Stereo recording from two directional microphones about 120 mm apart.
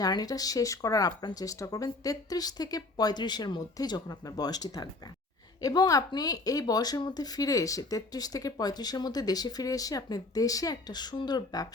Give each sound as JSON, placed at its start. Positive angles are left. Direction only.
{"t": 0.0, "sound": "speech", "side_deg": 35}